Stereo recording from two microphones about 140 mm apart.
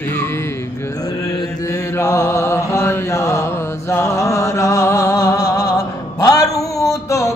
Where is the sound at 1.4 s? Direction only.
20° left (ahead or behind).